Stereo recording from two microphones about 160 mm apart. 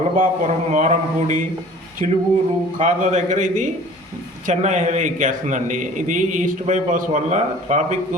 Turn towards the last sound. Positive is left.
turn(degrees=-50)  # may be behind; listen again after turning